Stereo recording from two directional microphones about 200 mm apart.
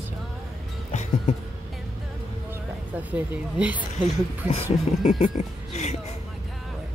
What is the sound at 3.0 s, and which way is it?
Speech, 5° right (ahead or behind).